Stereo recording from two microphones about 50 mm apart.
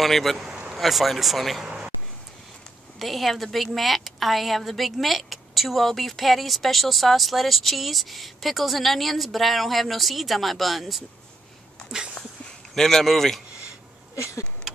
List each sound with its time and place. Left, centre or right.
0.0 s a woman's voice: centre
1.6 s speech: centre
3.0 s a woman's voice: centre
12.7 s a woman's voice: centre
14.1 s a sound: left